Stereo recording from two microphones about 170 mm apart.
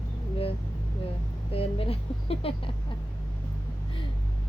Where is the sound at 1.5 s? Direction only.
35° left (ahead or behind).